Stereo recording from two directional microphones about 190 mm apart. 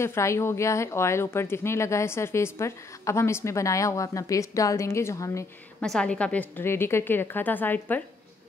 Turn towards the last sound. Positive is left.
turn(degrees=10)  # may be behind; listen again after turning